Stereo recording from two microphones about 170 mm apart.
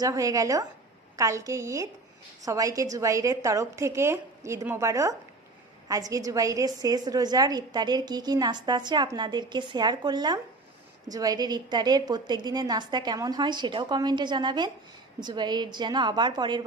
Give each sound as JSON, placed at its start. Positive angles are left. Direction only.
{"t": 0.0, "sound": "a woman's voice", "side_deg": -20}